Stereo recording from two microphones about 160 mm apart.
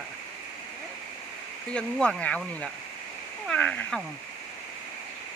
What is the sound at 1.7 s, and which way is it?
Speech, 5° left (ahead or behind).